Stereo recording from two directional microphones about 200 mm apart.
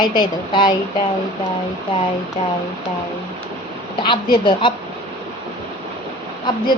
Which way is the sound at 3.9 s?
25° left (ahead or behind).